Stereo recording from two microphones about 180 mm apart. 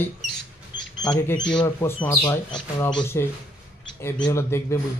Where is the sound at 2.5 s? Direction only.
25° left (ahead or behind).